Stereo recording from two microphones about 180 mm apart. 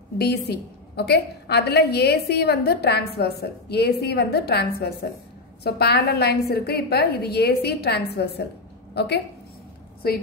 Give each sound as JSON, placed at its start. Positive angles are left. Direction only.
{"t": 0.2, "sound": "a woman's voice", "side_deg": 65}